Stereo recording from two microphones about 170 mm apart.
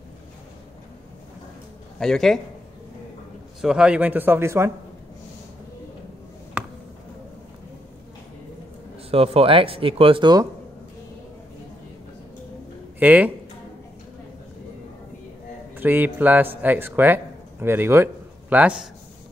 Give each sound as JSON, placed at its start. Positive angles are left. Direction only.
{"t": 2.0, "sound": "a man's voice", "side_deg": 0}
{"t": 3.6, "sound": "a man's voice", "side_deg": -5}
{"t": 9.1, "sound": "speech", "side_deg": -35}
{"t": 13.0, "sound": "a man's voice", "side_deg": -10}
{"t": 15.7, "sound": "speech", "side_deg": -10}